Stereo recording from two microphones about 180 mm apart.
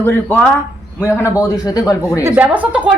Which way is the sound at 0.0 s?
10° left (ahead or behind).